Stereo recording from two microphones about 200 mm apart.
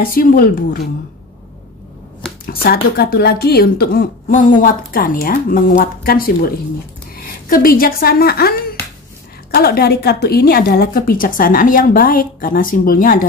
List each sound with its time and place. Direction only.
0.0 s speech: 45° left (ahead or behind)
2.4 s speech: 50° left (ahead or behind)